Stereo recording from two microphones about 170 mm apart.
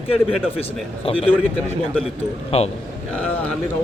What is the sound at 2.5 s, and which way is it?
Speech, 35° left (ahead or behind).